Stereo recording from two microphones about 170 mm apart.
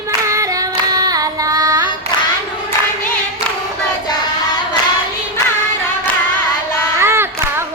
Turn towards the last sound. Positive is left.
turn(degrees=-15)  # may be behind; listen again after turning